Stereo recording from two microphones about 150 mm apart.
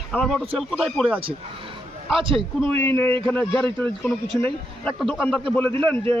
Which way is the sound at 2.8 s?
15° left (ahead or behind).